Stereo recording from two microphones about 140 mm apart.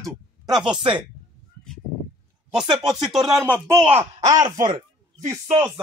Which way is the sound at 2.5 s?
5° right (ahead or behind).